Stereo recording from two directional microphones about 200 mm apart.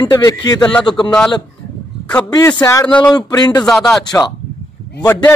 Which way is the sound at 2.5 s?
15° left (ahead or behind).